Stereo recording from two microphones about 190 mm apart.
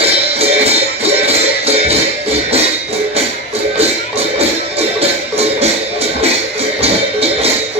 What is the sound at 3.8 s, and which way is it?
Music, 30° right (ahead or behind).